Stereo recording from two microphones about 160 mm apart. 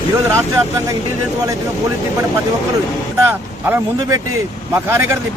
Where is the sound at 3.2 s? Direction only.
15° right (ahead or behind).